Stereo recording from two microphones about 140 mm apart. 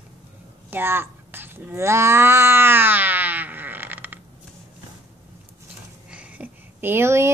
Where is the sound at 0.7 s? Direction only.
15° right (ahead or behind).